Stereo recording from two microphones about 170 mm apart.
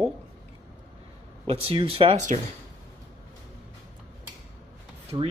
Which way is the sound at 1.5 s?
35° right (ahead or behind).